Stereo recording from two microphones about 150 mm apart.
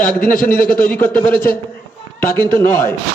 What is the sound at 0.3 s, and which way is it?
A man's voice, 70° left (ahead or behind).